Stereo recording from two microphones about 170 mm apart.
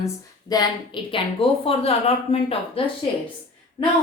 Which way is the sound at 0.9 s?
30° left (ahead or behind).